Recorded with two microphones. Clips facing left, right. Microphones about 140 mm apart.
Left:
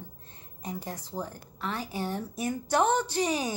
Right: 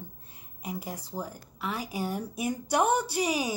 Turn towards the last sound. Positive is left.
turn(degrees=-10)  # may be behind; listen again after turning